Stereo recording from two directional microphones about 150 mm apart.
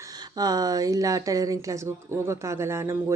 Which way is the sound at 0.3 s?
25° right (ahead or behind).